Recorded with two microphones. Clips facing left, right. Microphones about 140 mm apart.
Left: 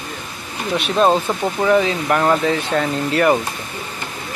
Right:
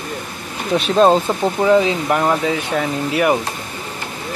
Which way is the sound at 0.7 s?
35° right (ahead or behind).